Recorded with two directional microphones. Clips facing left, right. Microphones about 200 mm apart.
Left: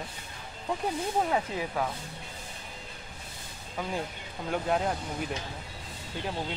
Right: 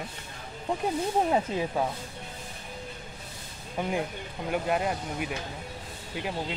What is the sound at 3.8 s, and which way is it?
Speech, 15° right (ahead or behind).